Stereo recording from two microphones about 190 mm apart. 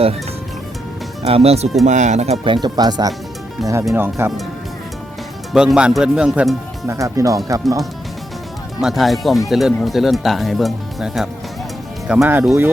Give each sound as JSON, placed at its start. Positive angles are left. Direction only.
{"t": 1.2, "sound": "speech", "side_deg": -30}
{"t": 3.6, "sound": "speech", "side_deg": 0}
{"t": 3.9, "sound": "speech", "side_deg": -10}
{"t": 5.5, "sound": "speech", "side_deg": -5}
{"t": 6.8, "sound": "speech", "side_deg": -15}
{"t": 8.8, "sound": "speech", "side_deg": 0}